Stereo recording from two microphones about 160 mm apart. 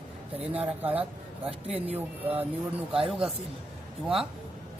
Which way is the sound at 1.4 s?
40° right (ahead or behind).